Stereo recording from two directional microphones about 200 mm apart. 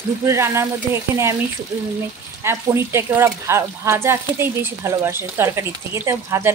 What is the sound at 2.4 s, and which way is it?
Speech, 10° right (ahead or behind).